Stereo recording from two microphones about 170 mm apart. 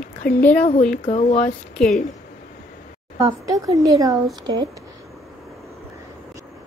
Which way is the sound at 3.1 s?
20° right (ahead or behind).